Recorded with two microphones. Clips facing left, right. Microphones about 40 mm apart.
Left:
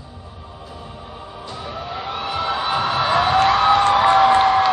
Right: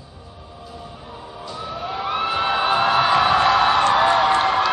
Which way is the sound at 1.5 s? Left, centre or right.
Left.